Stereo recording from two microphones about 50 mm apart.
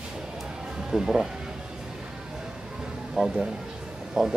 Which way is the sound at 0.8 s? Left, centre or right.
Centre.